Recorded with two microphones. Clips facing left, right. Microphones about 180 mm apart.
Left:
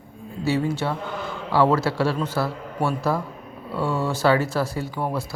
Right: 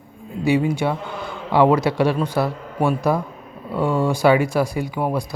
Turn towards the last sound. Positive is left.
turn(degrees=-15)  # may be behind; listen again after turning